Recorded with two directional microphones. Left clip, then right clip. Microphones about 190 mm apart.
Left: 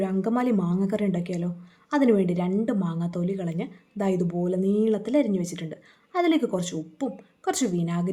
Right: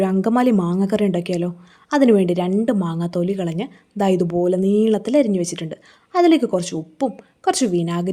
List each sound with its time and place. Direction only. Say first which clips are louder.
0.0 s a woman's voice: right 8 dB; 35° right (ahead or behind)